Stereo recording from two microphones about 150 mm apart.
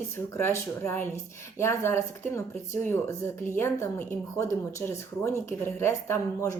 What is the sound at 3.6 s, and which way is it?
Speech, 15° left (ahead or behind).